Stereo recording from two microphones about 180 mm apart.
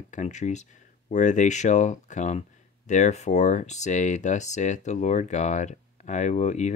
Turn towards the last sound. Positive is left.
turn(degrees=40)  # may be behind; listen again after turning